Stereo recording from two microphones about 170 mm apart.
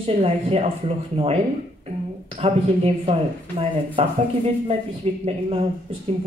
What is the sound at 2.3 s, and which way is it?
Speech, 35° right (ahead or behind).